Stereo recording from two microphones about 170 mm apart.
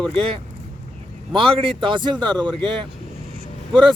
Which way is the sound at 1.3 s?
30° right (ahead or behind).